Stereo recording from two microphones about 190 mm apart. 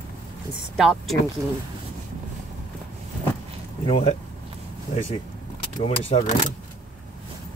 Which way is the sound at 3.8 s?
30° left (ahead or behind).